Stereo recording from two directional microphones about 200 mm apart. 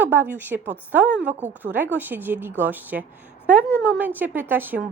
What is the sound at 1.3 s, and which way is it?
Speech, 35° right (ahead or behind).